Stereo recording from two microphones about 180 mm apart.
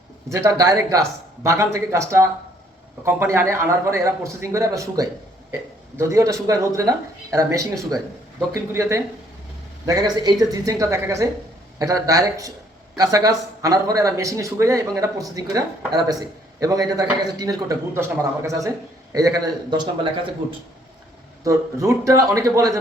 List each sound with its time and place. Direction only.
0.3 s a man's voice: 20° right (ahead or behind)
21.4 s a man's voice: 15° right (ahead or behind)